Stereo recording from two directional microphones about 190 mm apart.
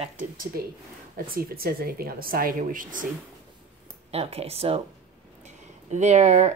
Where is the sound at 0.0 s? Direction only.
40° right (ahead or behind).